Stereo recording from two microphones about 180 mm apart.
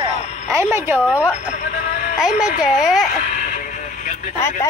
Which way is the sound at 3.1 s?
45° left (ahead or behind).